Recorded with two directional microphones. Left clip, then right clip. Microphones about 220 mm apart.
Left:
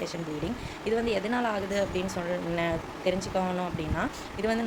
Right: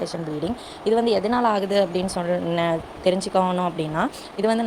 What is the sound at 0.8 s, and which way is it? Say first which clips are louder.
Speech: right 8 dB; 25° right (ahead or behind).